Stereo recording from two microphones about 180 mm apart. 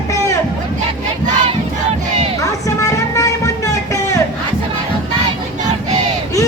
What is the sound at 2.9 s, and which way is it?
Music, 15° left (ahead or behind).